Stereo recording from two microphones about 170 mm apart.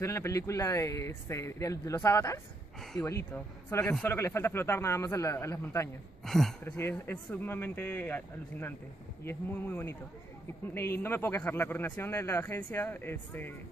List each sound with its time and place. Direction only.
0.0 s speech: 15° left (ahead or behind)
6.2 s speech: centre (ahead or behind)
6.6 s speech: 15° left (ahead or behind)